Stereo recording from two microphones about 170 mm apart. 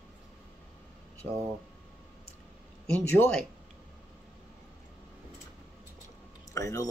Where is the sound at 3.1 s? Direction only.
15° left (ahead or behind).